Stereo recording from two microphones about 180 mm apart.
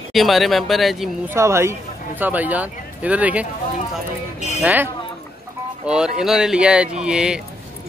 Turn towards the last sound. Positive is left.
turn(degrees=-5)  # may be behind; listen again after turning